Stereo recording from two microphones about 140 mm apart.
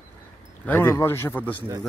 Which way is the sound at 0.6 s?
15° left (ahead or behind).